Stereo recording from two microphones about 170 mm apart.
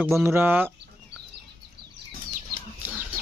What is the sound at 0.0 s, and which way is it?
Speech, 15° right (ahead or behind).